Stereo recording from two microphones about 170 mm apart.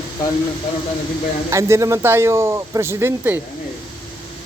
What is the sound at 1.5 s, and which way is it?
Speech, 15° right (ahead or behind).